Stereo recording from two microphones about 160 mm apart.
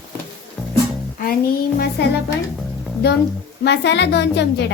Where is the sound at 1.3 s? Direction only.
70° left (ahead or behind).